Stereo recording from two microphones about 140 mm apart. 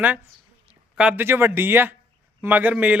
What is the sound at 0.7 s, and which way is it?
A man's voice, 5° right (ahead or behind).